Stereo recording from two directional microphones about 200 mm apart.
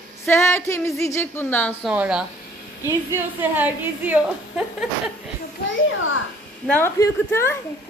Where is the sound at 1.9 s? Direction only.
5° right (ahead or behind).